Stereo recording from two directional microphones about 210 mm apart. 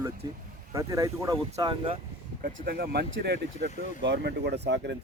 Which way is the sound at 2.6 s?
45° right (ahead or behind).